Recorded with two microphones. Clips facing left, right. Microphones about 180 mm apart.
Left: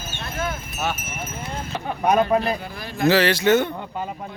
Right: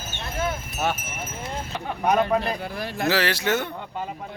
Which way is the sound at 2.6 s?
70° right (ahead or behind).